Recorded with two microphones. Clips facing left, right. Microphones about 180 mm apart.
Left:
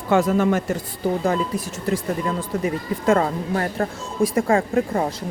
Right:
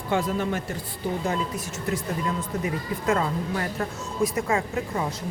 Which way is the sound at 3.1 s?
45° left (ahead or behind).